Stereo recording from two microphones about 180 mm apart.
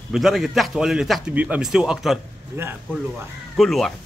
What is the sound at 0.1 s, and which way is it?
A man's voice, centre (ahead or behind).